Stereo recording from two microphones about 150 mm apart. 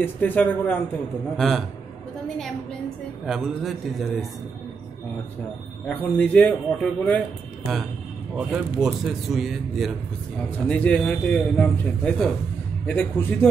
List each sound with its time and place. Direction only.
0.0 s a man's voice: 10° left (ahead or behind)
1.3 s a man's voice: centre (ahead or behind)
3.3 s a man's voice: centre (ahead or behind)
5.9 s a man's voice: 5° left (ahead or behind)
8.4 s a man's voice: 5° right (ahead or behind); by 13.5 s 10° left (ahead or behind)